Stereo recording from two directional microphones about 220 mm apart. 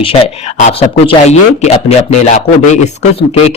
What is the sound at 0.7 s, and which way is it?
Speech, 30° left (ahead or behind).